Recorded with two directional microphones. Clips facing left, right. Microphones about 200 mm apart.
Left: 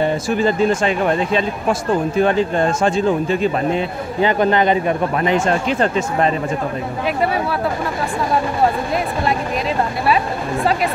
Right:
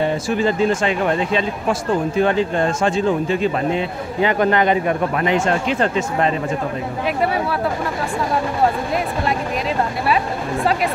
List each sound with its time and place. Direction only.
0.0 s speech: 45° left (ahead or behind)
4.2 s speech: 30° left (ahead or behind)